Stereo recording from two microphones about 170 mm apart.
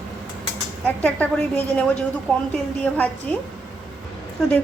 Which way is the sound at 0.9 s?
10° left (ahead or behind).